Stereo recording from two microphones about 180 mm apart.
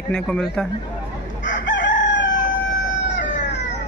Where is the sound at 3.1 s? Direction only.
80° left.